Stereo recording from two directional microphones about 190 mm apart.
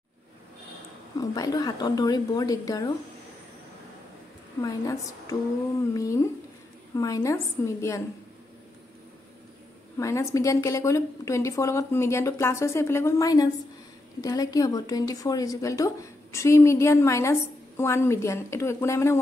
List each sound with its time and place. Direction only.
1.1 s speech: 20° left (ahead or behind)
4.6 s a woman's voice: 15° left (ahead or behind)
9.9 s a woman's voice: 15° left (ahead or behind)